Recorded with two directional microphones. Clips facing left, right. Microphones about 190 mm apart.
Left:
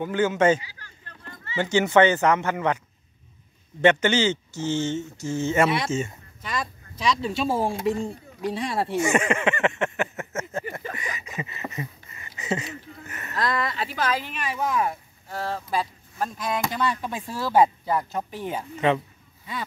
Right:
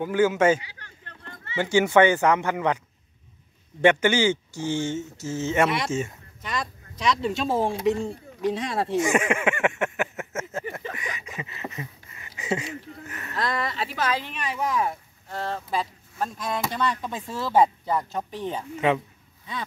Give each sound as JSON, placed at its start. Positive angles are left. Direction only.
{"t": 0.0, "sound": "speech", "side_deg": -10}
{"t": 0.6, "sound": "speech", "side_deg": -65}
{"t": 1.6, "sound": "speech", "side_deg": -10}
{"t": 3.8, "sound": "speech", "side_deg": -15}
{"t": 8.9, "sound": "a sound", "side_deg": 0}
{"t": 12.4, "sound": "a sound", "side_deg": -10}
{"t": 13.0, "sound": "speech", "side_deg": 0}